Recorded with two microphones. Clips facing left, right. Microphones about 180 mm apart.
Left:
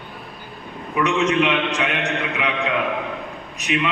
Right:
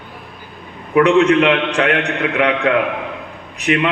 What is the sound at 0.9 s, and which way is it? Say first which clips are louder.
A man's voice: right 8 dB; 55° right (ahead or behind).